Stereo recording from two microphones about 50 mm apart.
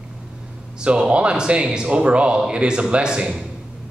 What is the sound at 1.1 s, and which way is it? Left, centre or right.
A man's voice, centre.